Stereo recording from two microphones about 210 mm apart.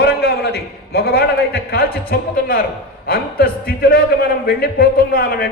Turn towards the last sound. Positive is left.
turn(degrees=45)  # may be behind; listen again after turning